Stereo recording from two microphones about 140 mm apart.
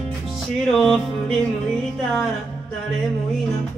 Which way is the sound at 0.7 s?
Centre (ahead or behind).